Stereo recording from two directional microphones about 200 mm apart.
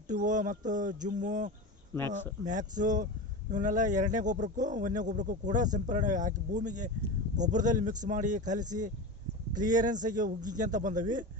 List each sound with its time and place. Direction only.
0.1 s speech: 40° right (ahead or behind)
1.9 s speech: 10° left (ahead or behind)
2.4 s speech: 40° right (ahead or behind)